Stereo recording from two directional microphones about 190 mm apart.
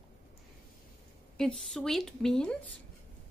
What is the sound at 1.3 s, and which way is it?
Speech, 5° left (ahead or behind).